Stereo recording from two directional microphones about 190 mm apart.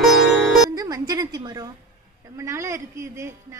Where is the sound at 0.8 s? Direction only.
20° right (ahead or behind).